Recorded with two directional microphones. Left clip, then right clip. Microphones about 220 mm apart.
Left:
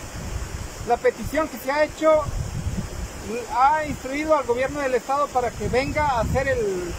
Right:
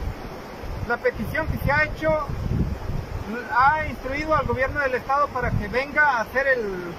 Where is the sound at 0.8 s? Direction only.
20° left (ahead or behind).